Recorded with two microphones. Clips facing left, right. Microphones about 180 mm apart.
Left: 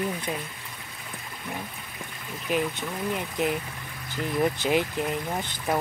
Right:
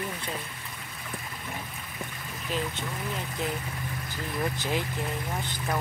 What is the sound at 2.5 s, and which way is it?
Speech, 15° left (ahead or behind).